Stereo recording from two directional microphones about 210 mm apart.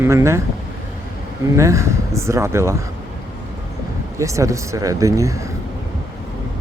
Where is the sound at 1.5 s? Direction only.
15° right (ahead or behind).